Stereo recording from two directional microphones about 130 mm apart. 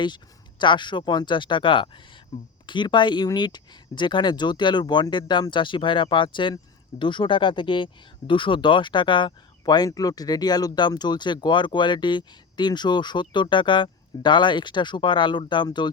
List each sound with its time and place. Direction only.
0.6 s speech: 35° left (ahead or behind)